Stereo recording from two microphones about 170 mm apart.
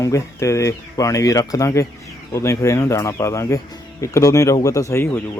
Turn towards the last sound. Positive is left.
turn(degrees=15)  # may be behind; listen again after turning